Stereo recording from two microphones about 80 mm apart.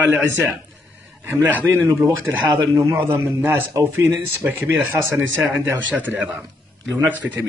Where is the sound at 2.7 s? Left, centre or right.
Right.